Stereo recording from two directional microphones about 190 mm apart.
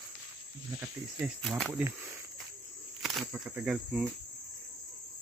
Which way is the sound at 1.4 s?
5° left (ahead or behind).